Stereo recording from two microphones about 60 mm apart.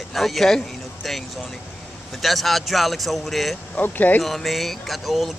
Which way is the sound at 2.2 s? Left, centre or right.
Centre.